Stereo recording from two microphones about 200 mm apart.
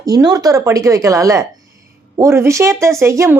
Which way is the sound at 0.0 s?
20° right (ahead or behind).